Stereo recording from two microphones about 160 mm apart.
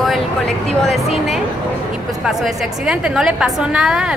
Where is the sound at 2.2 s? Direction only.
5° right (ahead or behind).